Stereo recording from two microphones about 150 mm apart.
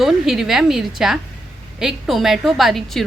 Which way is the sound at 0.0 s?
Centre (ahead or behind).